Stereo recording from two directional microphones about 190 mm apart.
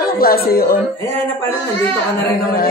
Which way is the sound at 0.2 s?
50° left (ahead or behind).